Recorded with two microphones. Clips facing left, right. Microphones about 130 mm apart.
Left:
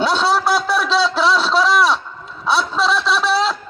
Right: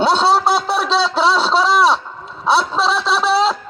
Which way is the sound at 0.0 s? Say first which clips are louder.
Right 3 dB; 30° right (ahead or behind).